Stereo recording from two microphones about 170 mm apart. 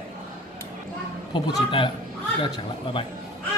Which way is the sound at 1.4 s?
30° left (ahead or behind).